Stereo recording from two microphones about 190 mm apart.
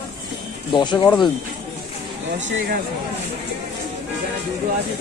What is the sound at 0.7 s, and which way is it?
Speech, 25° left (ahead or behind).